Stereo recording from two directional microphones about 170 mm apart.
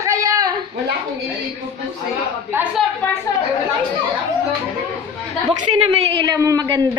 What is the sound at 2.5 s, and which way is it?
Speech, 5° right (ahead or behind).